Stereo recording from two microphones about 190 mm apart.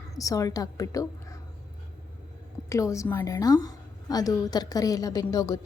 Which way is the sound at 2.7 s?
15° left (ahead or behind).